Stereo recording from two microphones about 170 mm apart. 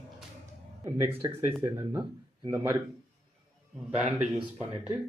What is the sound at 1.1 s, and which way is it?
Speech, 35° right (ahead or behind).